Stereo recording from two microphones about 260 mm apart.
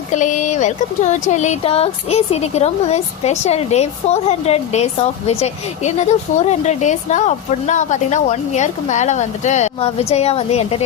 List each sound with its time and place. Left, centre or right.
0.1 s speech: left